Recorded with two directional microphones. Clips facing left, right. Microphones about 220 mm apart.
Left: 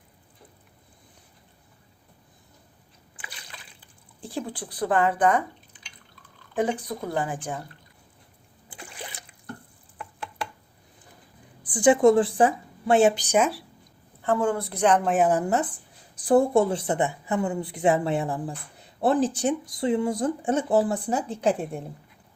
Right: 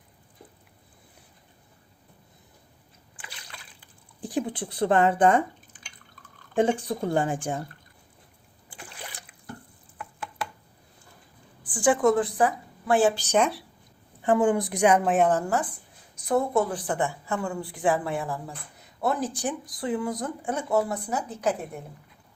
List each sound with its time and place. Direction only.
4.2 s speech: 15° right (ahead or behind)
5.7 s drip: 50° right (ahead or behind)
6.6 s speech: 25° right (ahead or behind)
11.6 s a woman's voice: 20° left (ahead or behind); by 13.7 s 5° left (ahead or behind)
14.2 s a woman's voice: 15° right (ahead or behind)
15.3 s speech: 15° left (ahead or behind)
16.1 s speech: 30° left (ahead or behind)